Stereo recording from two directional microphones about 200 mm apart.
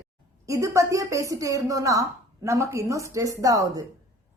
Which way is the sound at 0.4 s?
15° right (ahead or behind).